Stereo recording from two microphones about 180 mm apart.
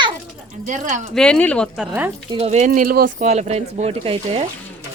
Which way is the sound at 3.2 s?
40° right (ahead or behind).